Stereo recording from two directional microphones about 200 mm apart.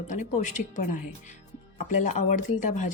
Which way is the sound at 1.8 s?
40° left (ahead or behind).